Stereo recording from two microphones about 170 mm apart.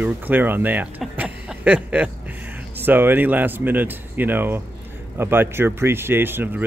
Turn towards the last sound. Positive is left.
turn(degrees=-10)  # may be behind; listen again after turning